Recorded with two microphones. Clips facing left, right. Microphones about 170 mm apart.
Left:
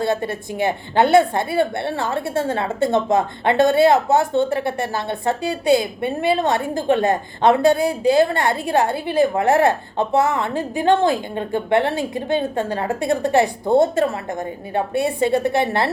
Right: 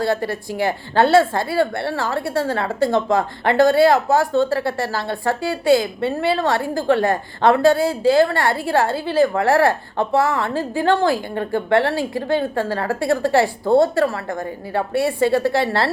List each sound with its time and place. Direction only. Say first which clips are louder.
0.0 s a woman's voice: right 1 dB; 20° left (ahead or behind)